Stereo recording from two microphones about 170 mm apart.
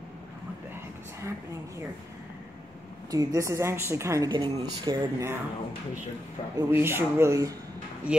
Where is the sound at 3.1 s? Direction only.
20° right (ahead or behind).